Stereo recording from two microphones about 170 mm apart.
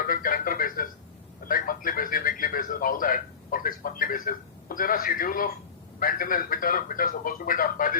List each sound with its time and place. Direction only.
0.0 s music: 55° left (ahead or behind)
1.5 s a man's voice: 55° left (ahead or behind)